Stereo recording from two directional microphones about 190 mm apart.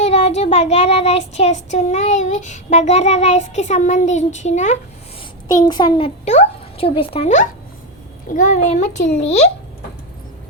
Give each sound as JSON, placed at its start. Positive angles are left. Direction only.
{"t": 0.0, "sound": "child singing", "side_deg": 35}
{"t": 5.6, "sound": "a child's voice", "side_deg": 20}
{"t": 6.2, "sound": "a child's voice", "side_deg": 35}
{"t": 8.3, "sound": "child singing", "side_deg": 45}